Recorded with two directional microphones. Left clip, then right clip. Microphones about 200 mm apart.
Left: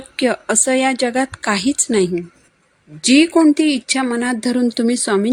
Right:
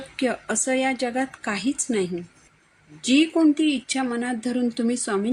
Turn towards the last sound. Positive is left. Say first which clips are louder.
# left 8 dB
turn(degrees=45)  # may be behind; listen again after turning